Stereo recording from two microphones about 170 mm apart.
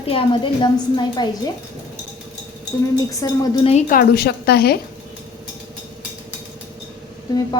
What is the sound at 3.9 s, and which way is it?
Speech, 60° left (ahead or behind).